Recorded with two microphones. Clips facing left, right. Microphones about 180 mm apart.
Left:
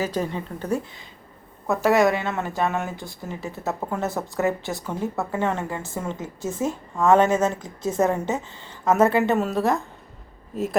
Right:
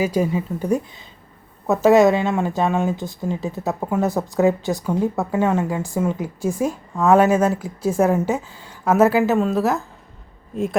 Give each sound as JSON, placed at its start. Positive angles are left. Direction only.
{"t": 0.0, "sound": "speech", "side_deg": -10}
{"t": 1.6, "sound": "speech", "side_deg": -20}